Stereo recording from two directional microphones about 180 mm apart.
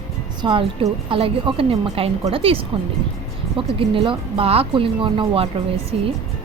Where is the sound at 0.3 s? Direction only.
30° right (ahead or behind).